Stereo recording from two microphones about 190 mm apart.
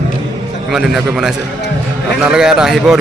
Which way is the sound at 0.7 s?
5° right (ahead or behind).